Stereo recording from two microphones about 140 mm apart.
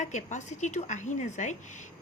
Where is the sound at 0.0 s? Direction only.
60° left (ahead or behind).